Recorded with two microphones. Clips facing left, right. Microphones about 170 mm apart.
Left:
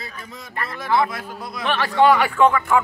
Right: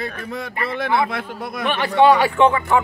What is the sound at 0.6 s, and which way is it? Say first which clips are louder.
Speech: even; 60° right (ahead or behind).